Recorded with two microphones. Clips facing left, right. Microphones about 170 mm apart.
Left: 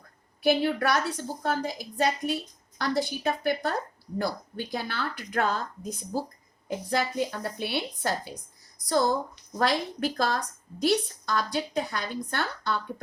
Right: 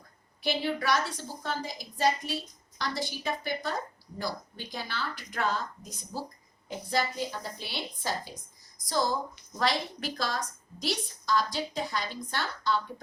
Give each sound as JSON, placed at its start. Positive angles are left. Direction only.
{"t": 0.4, "sound": "a woman's voice", "side_deg": 55}